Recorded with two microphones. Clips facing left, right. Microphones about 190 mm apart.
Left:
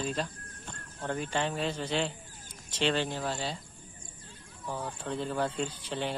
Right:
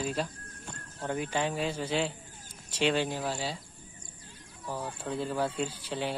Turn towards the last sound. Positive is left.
turn(degrees=-5)  # may be behind; listen again after turning